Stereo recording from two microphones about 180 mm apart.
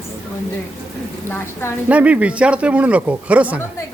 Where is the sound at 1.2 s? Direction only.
15° left (ahead or behind).